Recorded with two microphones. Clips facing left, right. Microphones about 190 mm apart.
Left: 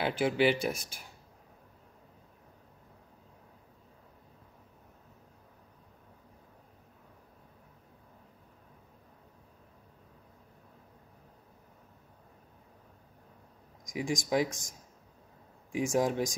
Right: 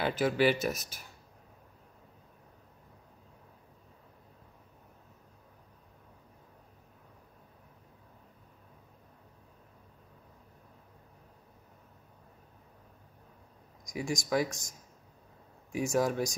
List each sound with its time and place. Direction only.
0.0 s speech: 15° left (ahead or behind)
13.9 s speech: 15° left (ahead or behind)
15.7 s speech: 20° left (ahead or behind)